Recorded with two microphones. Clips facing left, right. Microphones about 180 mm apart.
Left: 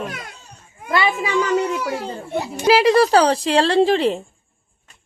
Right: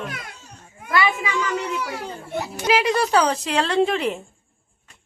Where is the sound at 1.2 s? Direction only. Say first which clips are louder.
Left 6 dB; 35° left (ahead or behind).